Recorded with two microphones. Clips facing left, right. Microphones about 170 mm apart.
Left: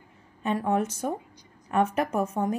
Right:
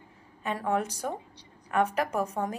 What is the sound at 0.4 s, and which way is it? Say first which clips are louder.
A woman's voice: left 3 dB; 20° left (ahead or behind).